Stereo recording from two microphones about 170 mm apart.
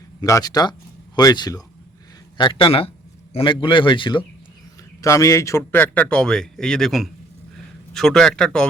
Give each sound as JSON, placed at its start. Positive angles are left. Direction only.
{"t": 0.2, "sound": "a man's voice", "side_deg": 20}
{"t": 4.9, "sound": "speech", "side_deg": 20}